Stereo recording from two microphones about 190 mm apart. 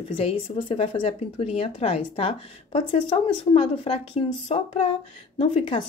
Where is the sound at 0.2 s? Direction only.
30° left (ahead or behind).